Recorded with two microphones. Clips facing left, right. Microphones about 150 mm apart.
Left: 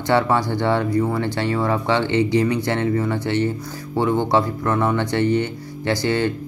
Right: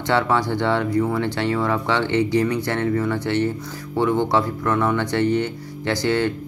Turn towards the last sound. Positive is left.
turn(degrees=15)  # may be behind; listen again after turning